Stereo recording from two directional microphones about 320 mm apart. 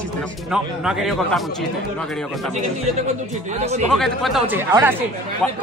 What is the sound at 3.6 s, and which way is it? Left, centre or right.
Speech, centre.